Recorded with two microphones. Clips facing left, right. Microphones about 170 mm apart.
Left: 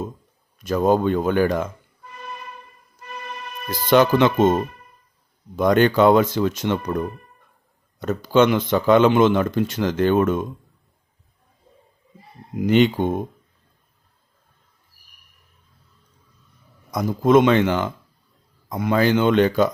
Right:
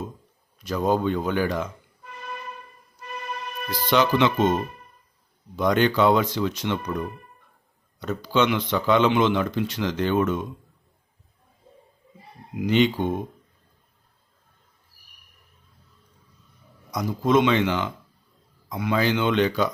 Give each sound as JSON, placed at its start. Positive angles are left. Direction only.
{"t": 0.6, "sound": "speech", "side_deg": 50}
{"t": 3.7, "sound": "speech", "side_deg": 50}
{"t": 5.5, "sound": "speech", "side_deg": 50}
{"t": 12.5, "sound": "speech", "side_deg": 50}
{"t": 16.9, "sound": "speech", "side_deg": 50}